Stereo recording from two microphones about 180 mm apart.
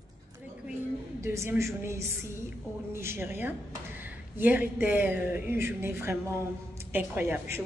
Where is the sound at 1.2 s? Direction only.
15° right (ahead or behind).